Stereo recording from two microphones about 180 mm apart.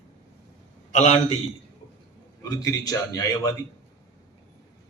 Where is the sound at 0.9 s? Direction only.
40° left (ahead or behind).